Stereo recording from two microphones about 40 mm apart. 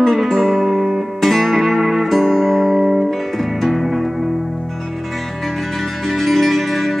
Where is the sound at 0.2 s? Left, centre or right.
Centre.